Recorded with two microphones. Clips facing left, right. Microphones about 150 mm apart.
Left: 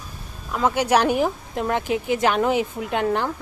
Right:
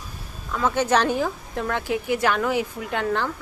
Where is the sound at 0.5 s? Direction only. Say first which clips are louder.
Left 2 dB; 15° left (ahead or behind).